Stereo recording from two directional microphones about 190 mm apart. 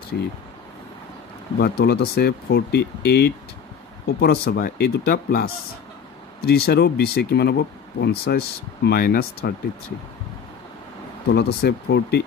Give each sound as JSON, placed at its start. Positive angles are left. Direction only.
{"t": 0.1, "sound": "speech", "side_deg": 55}
{"t": 1.6, "sound": "speech", "side_deg": 60}
{"t": 11.3, "sound": "speech", "side_deg": 60}